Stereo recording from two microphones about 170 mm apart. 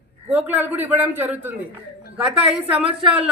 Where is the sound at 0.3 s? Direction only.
10° right (ahead or behind).